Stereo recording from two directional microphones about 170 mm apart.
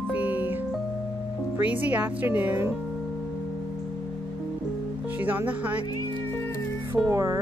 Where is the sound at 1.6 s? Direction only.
10° right (ahead or behind).